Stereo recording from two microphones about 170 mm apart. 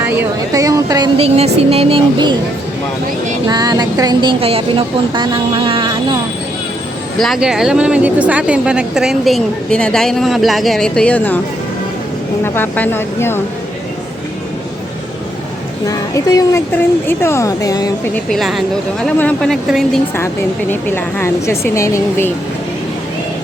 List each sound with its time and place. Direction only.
0.0 s speech: 15° right (ahead or behind)
3.5 s speech: 25° right (ahead or behind)
7.2 s a woman's voice: centre (ahead or behind)
12.4 s speech: 10° left (ahead or behind)
15.9 s a woman's voice: 20° left (ahead or behind)
18.1 s a woman's voice: centre (ahead or behind)
20.1 s speech: 15° left (ahead or behind)